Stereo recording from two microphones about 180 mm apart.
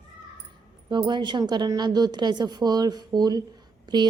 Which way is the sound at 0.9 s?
25° right (ahead or behind).